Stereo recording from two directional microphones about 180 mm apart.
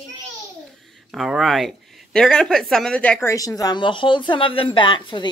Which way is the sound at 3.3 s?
20° left (ahead or behind).